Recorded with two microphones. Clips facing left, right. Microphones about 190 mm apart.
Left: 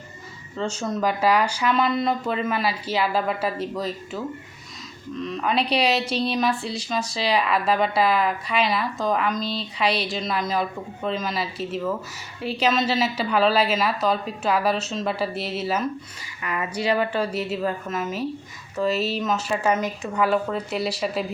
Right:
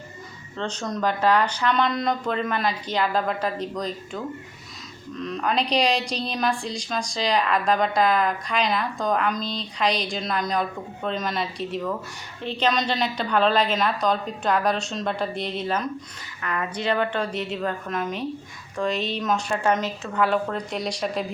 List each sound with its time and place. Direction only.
0.5 s a woman's voice: 5° left (ahead or behind)